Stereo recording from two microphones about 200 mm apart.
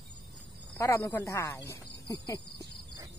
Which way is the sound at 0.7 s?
15° left (ahead or behind).